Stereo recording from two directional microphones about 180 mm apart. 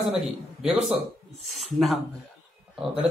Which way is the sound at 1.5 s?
Centre (ahead or behind).